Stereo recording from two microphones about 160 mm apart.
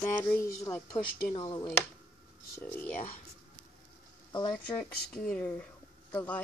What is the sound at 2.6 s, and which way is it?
Speech, 10° left (ahead or behind).